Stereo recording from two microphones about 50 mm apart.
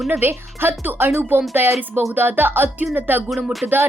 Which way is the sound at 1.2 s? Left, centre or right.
Right.